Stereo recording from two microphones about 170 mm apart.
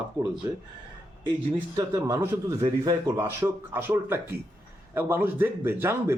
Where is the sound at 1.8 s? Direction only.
20° right (ahead or behind).